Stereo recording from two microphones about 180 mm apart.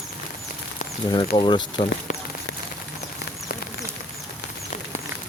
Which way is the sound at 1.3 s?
30° left (ahead or behind).